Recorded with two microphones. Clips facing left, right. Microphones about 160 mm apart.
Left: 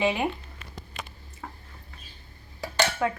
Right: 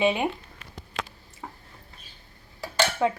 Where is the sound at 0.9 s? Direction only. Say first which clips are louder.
Right 7 dB; 90° right.